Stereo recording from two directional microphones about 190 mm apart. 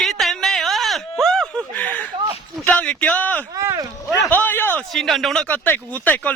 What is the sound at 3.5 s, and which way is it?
Speech, 15° right (ahead or behind).